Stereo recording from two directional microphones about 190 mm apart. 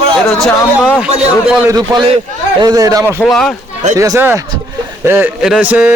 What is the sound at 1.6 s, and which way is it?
A man's voice, 20° right (ahead or behind).